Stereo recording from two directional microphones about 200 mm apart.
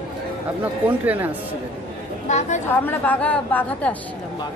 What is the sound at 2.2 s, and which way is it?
Speech, 35° left (ahead or behind).